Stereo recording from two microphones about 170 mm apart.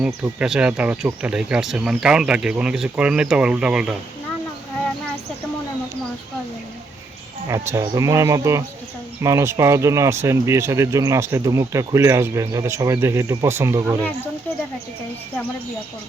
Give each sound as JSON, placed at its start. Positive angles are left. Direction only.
{"t": 0.0, "sound": "speech", "side_deg": -5}
{"t": 7.7, "sound": "speech", "side_deg": -15}